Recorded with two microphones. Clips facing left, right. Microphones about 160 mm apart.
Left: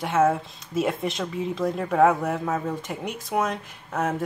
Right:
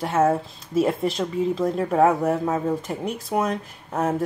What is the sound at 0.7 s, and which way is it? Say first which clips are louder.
Speech: right 4 dB; centre (ahead or behind).